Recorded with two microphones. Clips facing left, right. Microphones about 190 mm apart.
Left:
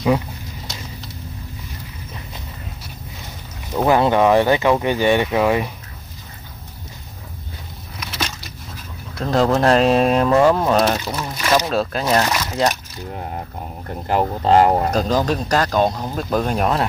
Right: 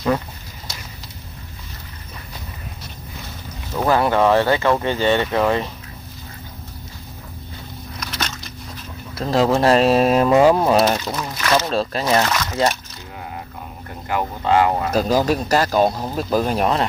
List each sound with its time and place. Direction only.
3.7 s speech: 15° left (ahead or behind)
8.0 s a sound: 5° left (ahead or behind)
9.1 s speech: centre (ahead or behind)
11.1 s speech: 10° left (ahead or behind)
11.6 s speech: centre (ahead or behind)
12.3 s speech: 15° left (ahead or behind)
13.1 s speech: 45° left (ahead or behind)
14.9 s speech: 10° right (ahead or behind)